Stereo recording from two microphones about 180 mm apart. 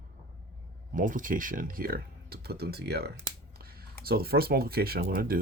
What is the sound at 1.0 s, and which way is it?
Speech, 50° right (ahead or behind).